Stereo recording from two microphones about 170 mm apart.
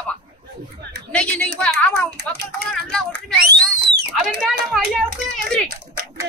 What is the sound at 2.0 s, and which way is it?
Speech, 70° right (ahead or behind).